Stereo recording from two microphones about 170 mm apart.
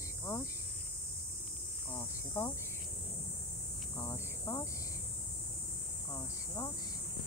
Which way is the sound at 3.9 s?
15° left (ahead or behind).